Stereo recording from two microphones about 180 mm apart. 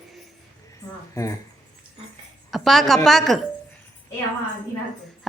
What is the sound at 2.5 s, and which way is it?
Speech, centre (ahead or behind).